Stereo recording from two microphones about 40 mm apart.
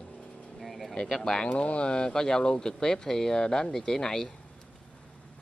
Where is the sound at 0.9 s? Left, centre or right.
Centre.